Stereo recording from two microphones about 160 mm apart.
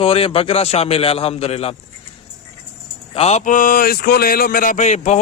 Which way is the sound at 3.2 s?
40° left (ahead or behind).